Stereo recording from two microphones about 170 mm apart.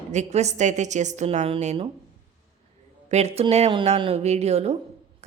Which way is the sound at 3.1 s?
40° right (ahead or behind).